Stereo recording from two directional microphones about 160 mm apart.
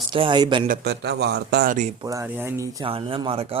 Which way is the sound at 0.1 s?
30° right (ahead or behind).